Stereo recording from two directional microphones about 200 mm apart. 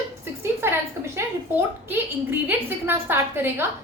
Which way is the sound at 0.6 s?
10° right (ahead or behind).